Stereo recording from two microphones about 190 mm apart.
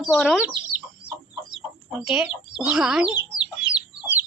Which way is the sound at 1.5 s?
5° right (ahead or behind).